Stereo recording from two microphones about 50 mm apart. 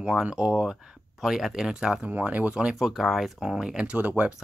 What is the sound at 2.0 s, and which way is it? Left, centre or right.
Speech, right.